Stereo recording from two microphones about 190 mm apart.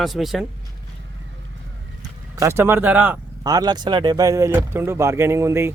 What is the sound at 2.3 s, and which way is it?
Speech, 15° right (ahead or behind).